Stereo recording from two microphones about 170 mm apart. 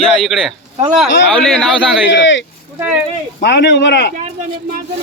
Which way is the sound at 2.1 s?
90° left.